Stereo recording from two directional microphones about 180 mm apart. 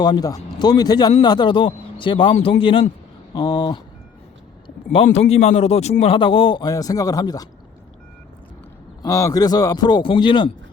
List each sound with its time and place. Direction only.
0.0 s speech: 20° left (ahead or behind)
5.0 s speech: 35° left (ahead or behind); by 7.4 s 20° left (ahead or behind)
9.0 s speech: 15° left (ahead or behind)